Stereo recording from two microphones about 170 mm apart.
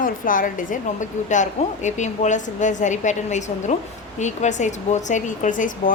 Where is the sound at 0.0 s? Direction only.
50° left (ahead or behind).